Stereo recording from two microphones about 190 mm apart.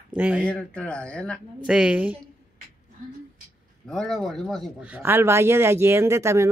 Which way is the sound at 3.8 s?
Centre (ahead or behind).